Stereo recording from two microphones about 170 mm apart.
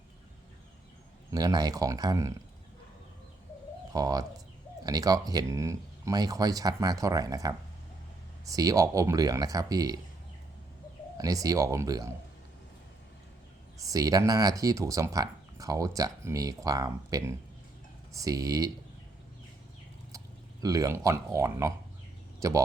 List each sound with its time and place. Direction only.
1.3 s speech: 20° right (ahead or behind)
3.9 s speech: 20° right (ahead or behind)
11.2 s speech: 20° right (ahead or behind)
13.7 s speech: 20° right (ahead or behind)
20.1 s speech: 20° right (ahead or behind)